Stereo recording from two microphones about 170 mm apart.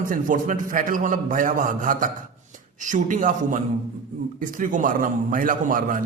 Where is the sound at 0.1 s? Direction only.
50° right (ahead or behind).